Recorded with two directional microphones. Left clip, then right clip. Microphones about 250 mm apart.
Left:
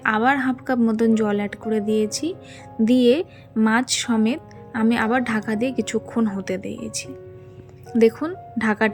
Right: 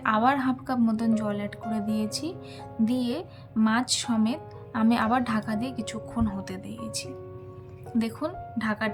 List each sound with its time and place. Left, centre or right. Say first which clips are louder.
0.0 s speech: left 4 dB; centre